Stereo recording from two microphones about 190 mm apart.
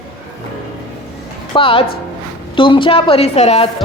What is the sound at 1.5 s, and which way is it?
A woman's voice, 25° left (ahead or behind).